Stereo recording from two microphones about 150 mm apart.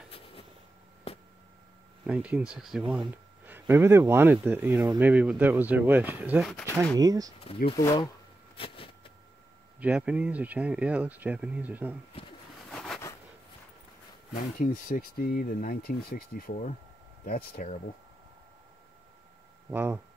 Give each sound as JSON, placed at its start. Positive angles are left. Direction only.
{"t": 1.1, "sound": "a sound", "side_deg": 40}
{"t": 2.0, "sound": "speech", "side_deg": -5}
{"t": 3.1, "sound": "speech", "side_deg": -15}
{"t": 7.0, "sound": "speech", "side_deg": -25}
{"t": 7.8, "sound": "speech", "side_deg": 25}
{"t": 8.5, "sound": "a sound", "side_deg": 35}
{"t": 9.8, "sound": "speech", "side_deg": -10}
{"t": 12.7, "sound": "a sound", "side_deg": 0}
{"t": 14.6, "sound": "speech", "side_deg": 65}
{"t": 17.2, "sound": "speech", "side_deg": 75}
{"t": 19.7, "sound": "speech", "side_deg": -15}